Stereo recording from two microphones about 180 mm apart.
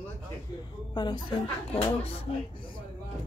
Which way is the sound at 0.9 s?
25° left (ahead or behind).